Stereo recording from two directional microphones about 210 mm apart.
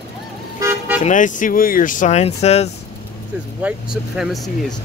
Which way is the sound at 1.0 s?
35° left (ahead or behind).